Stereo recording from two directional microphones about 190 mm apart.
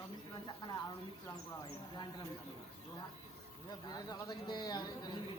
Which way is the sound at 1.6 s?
20° left (ahead or behind).